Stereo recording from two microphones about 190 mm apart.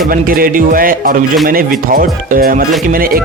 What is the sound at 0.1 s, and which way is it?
Speech, 50° right (ahead or behind).